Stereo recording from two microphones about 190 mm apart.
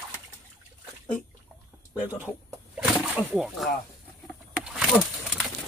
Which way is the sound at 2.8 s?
5° right (ahead or behind).